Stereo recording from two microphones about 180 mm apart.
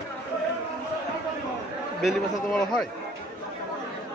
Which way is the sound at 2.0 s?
Centre (ahead or behind).